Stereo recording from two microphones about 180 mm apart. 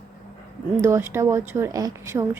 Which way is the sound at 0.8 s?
15° right (ahead or behind).